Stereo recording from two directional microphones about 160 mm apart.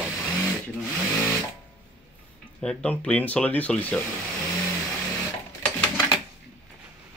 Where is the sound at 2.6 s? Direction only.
5° left (ahead or behind).